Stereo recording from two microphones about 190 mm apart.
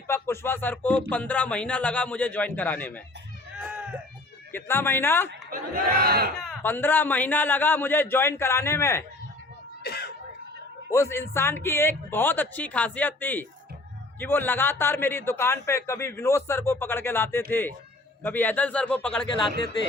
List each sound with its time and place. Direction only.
0.1 s a man's voice: 10° left (ahead or behind)
4.5 s a man's voice: 10° left (ahead or behind)
5.5 s battle cry: 50° right (ahead or behind)
6.3 s a man's voice: 5° left (ahead or behind)
9.8 s a sound: 60° left (ahead or behind)
10.9 s a man's voice: 15° left (ahead or behind)